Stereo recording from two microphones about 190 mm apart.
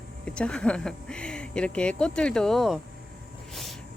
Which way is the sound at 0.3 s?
5° left (ahead or behind).